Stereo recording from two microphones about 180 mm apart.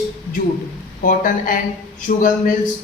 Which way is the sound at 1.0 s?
50° left (ahead or behind).